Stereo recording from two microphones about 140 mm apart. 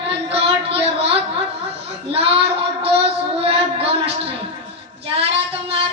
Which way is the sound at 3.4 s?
45° right (ahead or behind).